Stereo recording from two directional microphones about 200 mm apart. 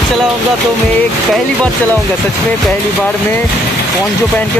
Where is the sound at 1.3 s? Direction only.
5° left (ahead or behind).